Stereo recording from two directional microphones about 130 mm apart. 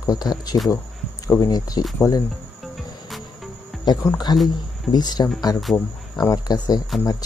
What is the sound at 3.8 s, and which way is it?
Speech, 30° left (ahead or behind).